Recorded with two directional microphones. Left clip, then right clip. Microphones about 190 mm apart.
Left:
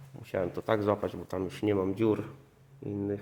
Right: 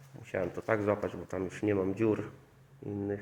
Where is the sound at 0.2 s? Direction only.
30° left (ahead or behind).